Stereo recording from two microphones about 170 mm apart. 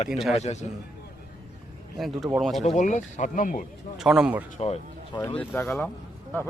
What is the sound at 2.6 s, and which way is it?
Speech, 45° left (ahead or behind).